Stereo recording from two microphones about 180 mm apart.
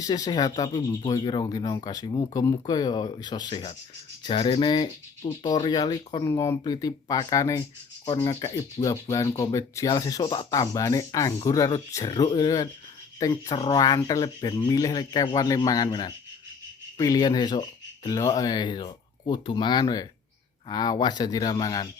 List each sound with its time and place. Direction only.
0.0 s speech: 20° left (ahead or behind)